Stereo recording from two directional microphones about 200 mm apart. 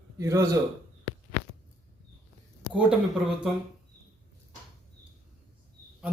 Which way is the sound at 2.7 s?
Centre (ahead or behind).